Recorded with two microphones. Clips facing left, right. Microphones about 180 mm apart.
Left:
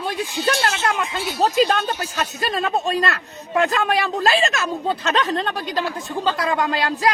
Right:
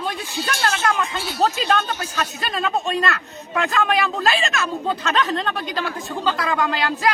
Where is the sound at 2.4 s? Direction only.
30° left (ahead or behind).